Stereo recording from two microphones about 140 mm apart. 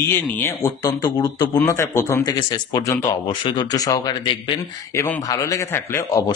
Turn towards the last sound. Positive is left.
turn(degrees=25)  # may be behind; listen again after turning